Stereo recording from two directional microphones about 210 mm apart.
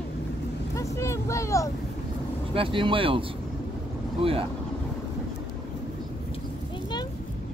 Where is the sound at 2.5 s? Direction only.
25° right (ahead or behind).